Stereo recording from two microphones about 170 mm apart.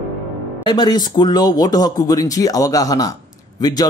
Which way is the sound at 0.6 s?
25° left (ahead or behind).